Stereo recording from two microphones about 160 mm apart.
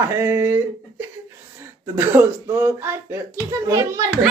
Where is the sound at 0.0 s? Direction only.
15° right (ahead or behind).